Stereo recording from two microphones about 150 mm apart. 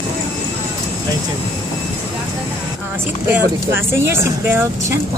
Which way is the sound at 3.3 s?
15° right (ahead or behind).